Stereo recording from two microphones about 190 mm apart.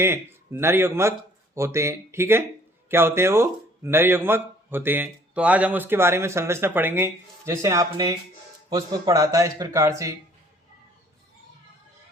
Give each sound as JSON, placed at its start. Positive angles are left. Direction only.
{"t": 0.0, "sound": "a man's voice", "side_deg": -10}